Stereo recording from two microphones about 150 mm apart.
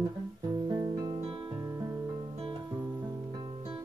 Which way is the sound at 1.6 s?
15° right (ahead or behind).